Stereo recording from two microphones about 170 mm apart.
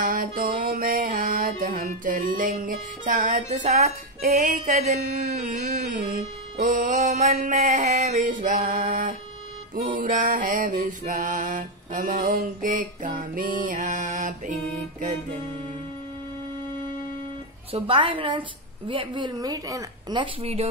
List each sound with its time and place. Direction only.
0.0 s music: 55° right (ahead or behind)
17.7 s a woman's voice: 30° right (ahead or behind)